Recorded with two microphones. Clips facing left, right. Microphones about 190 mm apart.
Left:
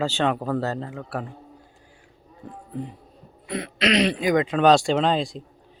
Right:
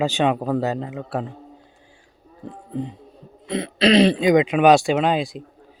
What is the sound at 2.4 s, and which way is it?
Speech, 25° right (ahead or behind).